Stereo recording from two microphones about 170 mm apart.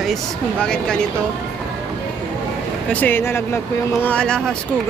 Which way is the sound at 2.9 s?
10° left (ahead or behind).